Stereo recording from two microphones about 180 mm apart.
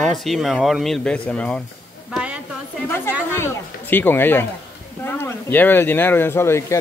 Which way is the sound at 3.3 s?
15° left (ahead or behind).